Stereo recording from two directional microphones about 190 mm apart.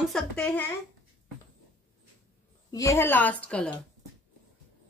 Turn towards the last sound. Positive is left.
turn(degrees=5)  # may be behind; listen again after turning